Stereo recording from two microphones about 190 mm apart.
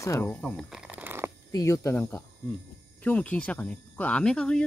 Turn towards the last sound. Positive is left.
turn(degrees=5)  # may be behind; listen again after turning